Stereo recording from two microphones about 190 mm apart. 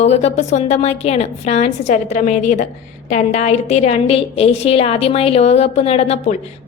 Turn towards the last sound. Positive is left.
turn(degrees=30)  # may be behind; listen again after turning